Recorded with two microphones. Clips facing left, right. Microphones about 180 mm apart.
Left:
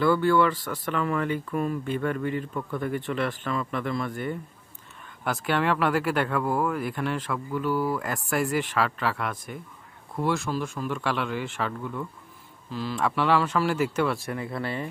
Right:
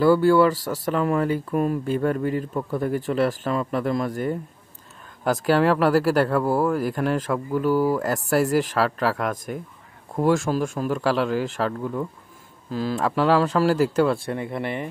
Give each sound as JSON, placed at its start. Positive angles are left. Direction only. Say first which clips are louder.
{"t": 0.0, "sound": "speech", "louder": "right 5 dB", "side_deg": -40}